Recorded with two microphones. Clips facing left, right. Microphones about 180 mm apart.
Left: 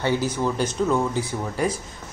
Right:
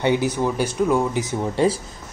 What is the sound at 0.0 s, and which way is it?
Speech, 15° right (ahead or behind).